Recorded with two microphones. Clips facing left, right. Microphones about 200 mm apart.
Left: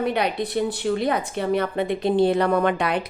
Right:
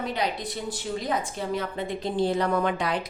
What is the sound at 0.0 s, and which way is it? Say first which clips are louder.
A woman's voice: left 6 dB; 60° left (ahead or behind).